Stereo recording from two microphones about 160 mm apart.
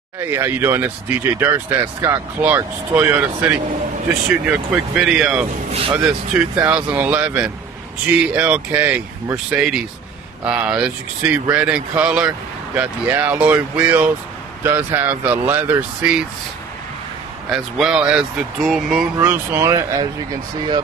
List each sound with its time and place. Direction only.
0.2 s speech: 15° right (ahead or behind)
5.7 s speech: 35° right (ahead or behind)
5.9 s speech: 5° right (ahead or behind)
17.5 s speech: 5° right (ahead or behind)
19.1 s speech: 15° right (ahead or behind)